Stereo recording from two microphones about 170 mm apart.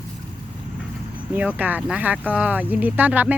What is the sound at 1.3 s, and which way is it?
Speech, 10° right (ahead or behind).